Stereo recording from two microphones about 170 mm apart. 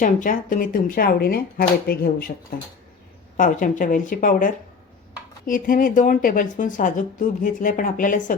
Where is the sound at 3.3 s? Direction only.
50° left (ahead or behind).